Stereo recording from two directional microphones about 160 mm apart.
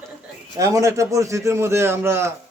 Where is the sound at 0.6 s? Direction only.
20° right (ahead or behind).